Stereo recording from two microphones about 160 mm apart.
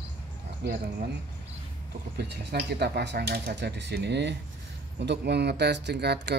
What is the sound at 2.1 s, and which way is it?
Speech, 90° right.